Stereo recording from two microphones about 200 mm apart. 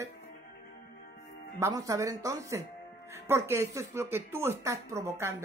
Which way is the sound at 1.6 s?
15° right (ahead or behind).